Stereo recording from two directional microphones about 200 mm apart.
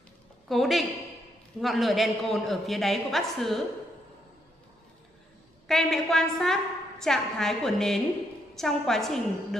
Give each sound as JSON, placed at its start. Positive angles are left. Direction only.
{"t": 0.5, "sound": "a woman's voice", "side_deg": 0}
{"t": 5.7, "sound": "a woman's voice", "side_deg": 0}